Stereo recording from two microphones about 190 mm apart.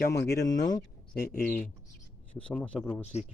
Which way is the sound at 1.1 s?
50° left (ahead or behind).